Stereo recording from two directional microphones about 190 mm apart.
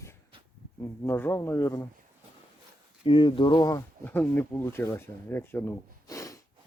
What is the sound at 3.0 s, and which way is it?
Speech, 25° left (ahead or behind).